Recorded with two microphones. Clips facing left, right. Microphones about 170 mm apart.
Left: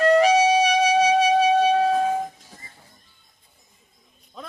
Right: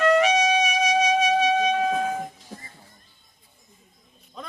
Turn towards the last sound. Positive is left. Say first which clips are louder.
# even
turn(degrees=0)  # may be behind; listen again after turning